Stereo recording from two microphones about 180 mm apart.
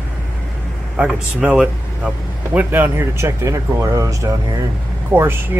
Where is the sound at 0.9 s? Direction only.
5° right (ahead or behind).